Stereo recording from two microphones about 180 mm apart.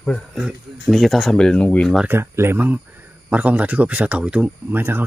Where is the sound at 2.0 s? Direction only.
15° right (ahead or behind).